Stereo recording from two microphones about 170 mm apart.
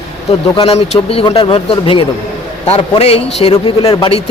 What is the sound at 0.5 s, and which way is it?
Speech, 30° left (ahead or behind).